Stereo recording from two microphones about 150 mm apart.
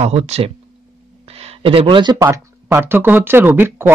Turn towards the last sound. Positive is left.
turn(degrees=-15)  # may be behind; listen again after turning